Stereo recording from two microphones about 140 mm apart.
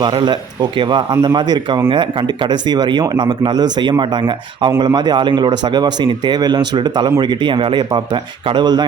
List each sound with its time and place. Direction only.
0.0 s speech: 30° right (ahead or behind)